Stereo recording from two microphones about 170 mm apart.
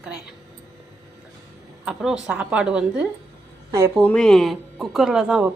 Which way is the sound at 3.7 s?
20° right (ahead or behind).